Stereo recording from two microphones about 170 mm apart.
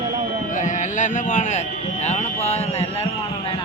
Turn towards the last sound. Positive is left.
turn(degrees=35)  # may be behind; listen again after turning